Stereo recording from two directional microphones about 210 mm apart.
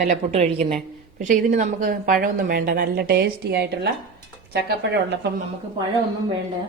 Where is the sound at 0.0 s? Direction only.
30° right (ahead or behind); by 3.7 s 50° right (ahead or behind).